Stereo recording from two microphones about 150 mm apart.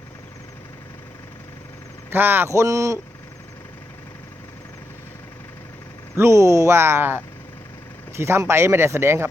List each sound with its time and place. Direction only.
2.0 s speech: 15° right (ahead or behind)
6.1 s speech: 20° right (ahead or behind)